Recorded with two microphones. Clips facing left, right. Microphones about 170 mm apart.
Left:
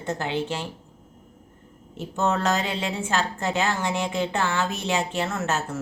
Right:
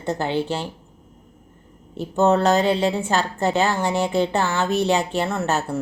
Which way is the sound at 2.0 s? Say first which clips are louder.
Right 7 dB; 35° right (ahead or behind).